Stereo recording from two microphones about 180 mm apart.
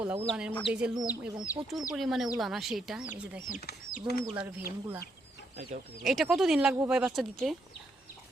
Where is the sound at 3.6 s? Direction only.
65° left (ahead or behind).